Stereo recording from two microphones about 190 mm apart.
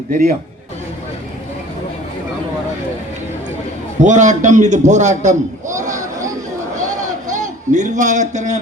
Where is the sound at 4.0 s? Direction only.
40° right (ahead or behind).